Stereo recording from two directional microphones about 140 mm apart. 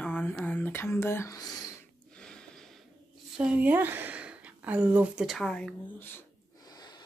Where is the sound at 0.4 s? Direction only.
10° left (ahead or behind); by 1.7 s 25° left (ahead or behind).